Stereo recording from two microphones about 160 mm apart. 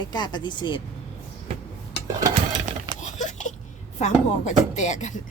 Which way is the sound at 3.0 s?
50° left (ahead or behind).